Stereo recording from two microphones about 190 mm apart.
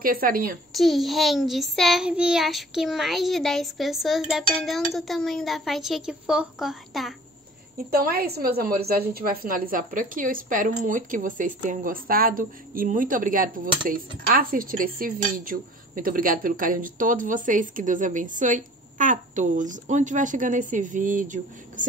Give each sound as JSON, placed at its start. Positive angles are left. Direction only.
{"t": 0.0, "sound": "speech", "side_deg": -50}
{"t": 0.7, "sound": "child singing", "side_deg": 0}
{"t": 7.9, "sound": "speech", "side_deg": -50}